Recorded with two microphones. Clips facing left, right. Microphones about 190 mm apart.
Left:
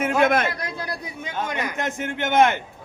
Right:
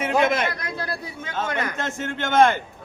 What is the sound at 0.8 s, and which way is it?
A man's voice, 15° left (ahead or behind).